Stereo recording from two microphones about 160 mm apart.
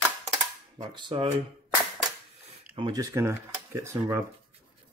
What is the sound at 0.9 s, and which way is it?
Speech, 30° right (ahead or behind).